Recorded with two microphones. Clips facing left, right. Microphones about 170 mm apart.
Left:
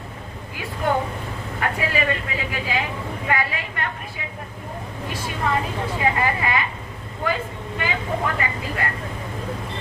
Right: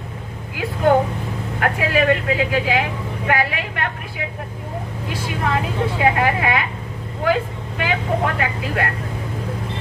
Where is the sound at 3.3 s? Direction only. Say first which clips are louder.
Right 4 dB; 75° right (ahead or behind).